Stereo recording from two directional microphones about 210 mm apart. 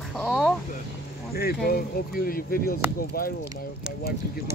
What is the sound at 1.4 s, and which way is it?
Speech, 45° left (ahead or behind).